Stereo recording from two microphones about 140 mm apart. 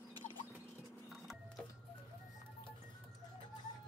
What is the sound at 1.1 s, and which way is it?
Printer, centre (ahead or behind).